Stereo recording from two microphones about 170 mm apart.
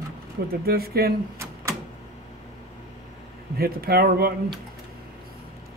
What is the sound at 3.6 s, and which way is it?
Speech, 65° right (ahead or behind).